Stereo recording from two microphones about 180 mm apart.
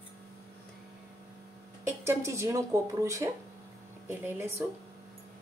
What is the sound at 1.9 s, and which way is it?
Speech, 15° right (ahead or behind).